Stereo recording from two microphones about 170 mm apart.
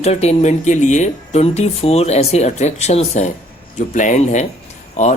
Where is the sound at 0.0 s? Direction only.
40° left (ahead or behind).